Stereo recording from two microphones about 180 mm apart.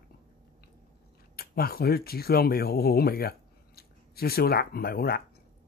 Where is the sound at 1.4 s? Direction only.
60° left (ahead or behind).